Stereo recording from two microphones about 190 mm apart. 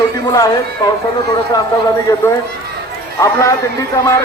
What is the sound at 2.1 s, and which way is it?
A man's voice, 20° left (ahead or behind).